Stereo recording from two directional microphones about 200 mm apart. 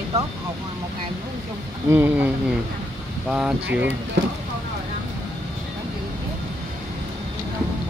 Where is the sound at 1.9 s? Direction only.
10° right (ahead or behind).